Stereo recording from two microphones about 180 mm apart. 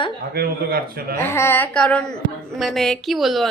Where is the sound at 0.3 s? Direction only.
55° right (ahead or behind).